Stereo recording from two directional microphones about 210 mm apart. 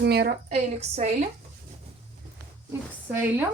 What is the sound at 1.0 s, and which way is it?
Speech, 30° right (ahead or behind).